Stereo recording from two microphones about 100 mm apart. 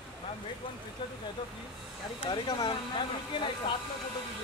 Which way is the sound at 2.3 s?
55° left (ahead or behind).